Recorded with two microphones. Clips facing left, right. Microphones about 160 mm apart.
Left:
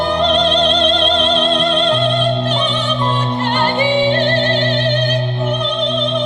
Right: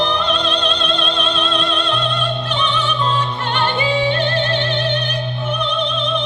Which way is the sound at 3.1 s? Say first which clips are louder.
Left 3 dB; 35° left (ahead or behind).